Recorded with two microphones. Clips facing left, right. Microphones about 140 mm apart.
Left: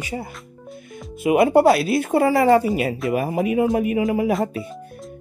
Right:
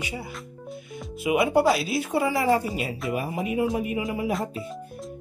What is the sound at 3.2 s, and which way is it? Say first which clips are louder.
Speech: left 6 dB; 65° left (ahead or behind).